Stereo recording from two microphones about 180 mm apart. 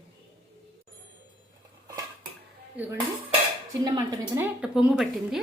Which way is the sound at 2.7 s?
10° right (ahead or behind).